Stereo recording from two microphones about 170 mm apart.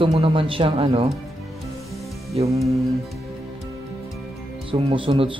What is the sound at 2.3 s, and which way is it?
Music, 35° right (ahead or behind).